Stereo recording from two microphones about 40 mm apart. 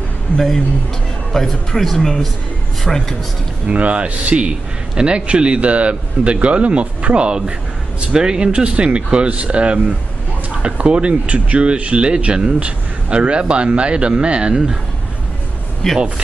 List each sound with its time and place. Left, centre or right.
1.3 s speech: centre
3.7 s a man's voice: right
8.5 s a man's voice: right
15.8 s speech: centre